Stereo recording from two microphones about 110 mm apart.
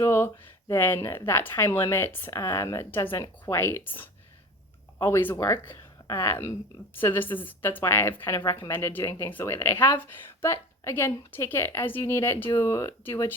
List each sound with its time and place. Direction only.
0.0 s speech: 20° left (ahead or behind)
4.9 s speech: 25° left (ahead or behind)